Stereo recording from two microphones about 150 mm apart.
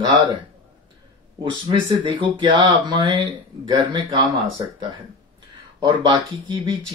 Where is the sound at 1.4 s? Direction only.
35° right (ahead or behind).